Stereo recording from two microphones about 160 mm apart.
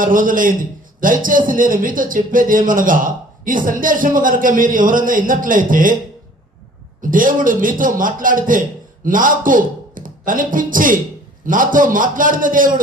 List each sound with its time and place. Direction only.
0.0 s a man's voice: 55° right (ahead or behind)
7.1 s a man's voice: 55° right (ahead or behind)